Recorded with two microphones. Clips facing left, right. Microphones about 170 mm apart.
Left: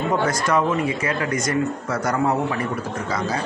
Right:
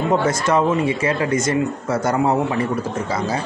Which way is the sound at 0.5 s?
25° right (ahead or behind).